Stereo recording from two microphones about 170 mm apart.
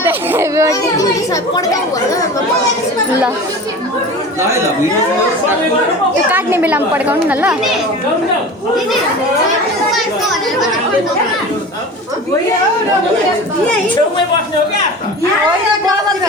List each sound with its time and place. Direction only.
0.0 s a woman's voice: 10° right (ahead or behind)
0.7 s a child's voice: 20° left (ahead or behind)
6.3 s a woman's voice: 10° right (ahead or behind)